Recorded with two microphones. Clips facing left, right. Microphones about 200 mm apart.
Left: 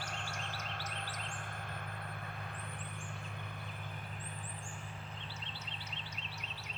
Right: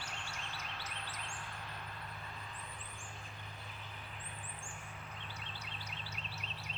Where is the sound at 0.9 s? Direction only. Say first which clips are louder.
Left 3 dB; 50° left (ahead or behind).